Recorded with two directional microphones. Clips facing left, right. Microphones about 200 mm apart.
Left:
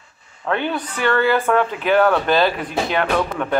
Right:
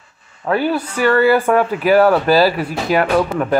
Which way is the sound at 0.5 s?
5° right (ahead or behind).